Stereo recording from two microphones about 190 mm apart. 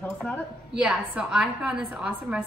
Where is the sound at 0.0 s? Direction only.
10° left (ahead or behind).